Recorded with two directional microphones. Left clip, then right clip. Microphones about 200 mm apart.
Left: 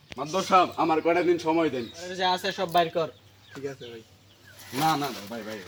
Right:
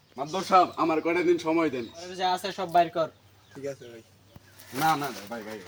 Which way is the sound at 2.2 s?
35° right (ahead or behind).